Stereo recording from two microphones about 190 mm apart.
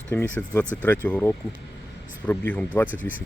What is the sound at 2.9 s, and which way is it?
Speech, 45° left (ahead or behind).